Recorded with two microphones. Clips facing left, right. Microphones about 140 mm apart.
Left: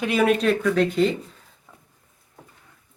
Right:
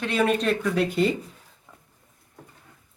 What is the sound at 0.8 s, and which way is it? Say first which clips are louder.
Speech: left 3 dB; 5° right (ahead or behind).